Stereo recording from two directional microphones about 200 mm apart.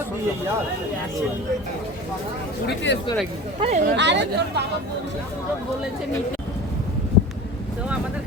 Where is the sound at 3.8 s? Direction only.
60° right (ahead or behind).